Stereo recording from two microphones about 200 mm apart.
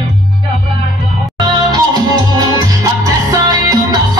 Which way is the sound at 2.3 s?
15° right (ahead or behind).